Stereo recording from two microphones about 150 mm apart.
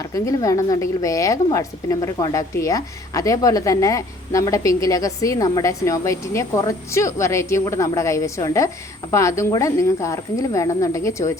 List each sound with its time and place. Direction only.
0.0 s a woman's voice: 20° left (ahead or behind)